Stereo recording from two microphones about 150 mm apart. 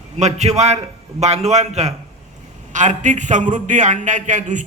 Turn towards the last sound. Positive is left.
turn(degrees=-55)  # may be behind; listen again after turning